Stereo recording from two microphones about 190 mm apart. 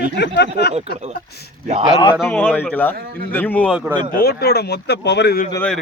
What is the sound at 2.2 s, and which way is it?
Speech, 5° left (ahead or behind).